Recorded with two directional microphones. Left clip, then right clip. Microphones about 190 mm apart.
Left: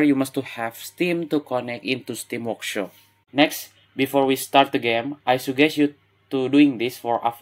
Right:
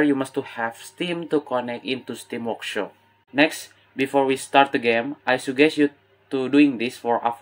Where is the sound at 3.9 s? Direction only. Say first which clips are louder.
Left 1 dB; 35° left (ahead or behind).